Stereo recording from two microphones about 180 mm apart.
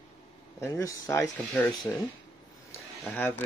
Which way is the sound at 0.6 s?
20° left (ahead or behind).